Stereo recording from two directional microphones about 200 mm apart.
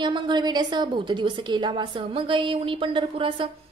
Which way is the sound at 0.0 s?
20° right (ahead or behind).